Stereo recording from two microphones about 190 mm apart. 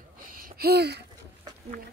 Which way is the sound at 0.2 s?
50° right (ahead or behind).